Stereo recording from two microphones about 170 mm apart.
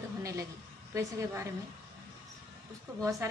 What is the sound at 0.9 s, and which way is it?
Speech, 15° right (ahead or behind).